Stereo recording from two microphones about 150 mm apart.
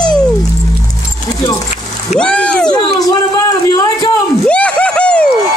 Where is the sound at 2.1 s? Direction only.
5° left (ahead or behind).